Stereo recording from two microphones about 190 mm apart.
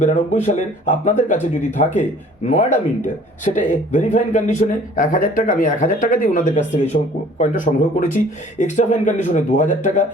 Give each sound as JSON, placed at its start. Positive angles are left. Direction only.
{"t": 0.0, "sound": "speech", "side_deg": 40}